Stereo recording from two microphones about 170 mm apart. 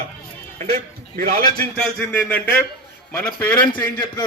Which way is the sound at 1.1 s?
60° right (ahead or behind).